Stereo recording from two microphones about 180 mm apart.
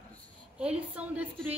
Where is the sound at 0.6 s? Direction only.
5° right (ahead or behind).